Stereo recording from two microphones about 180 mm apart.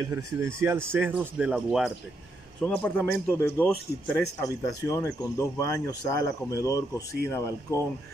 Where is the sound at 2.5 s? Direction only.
5° left (ahead or behind).